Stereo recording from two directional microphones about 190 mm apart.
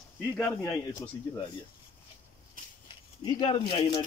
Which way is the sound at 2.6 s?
45° right (ahead or behind).